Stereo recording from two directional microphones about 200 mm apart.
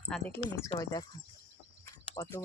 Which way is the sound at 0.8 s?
20° left (ahead or behind).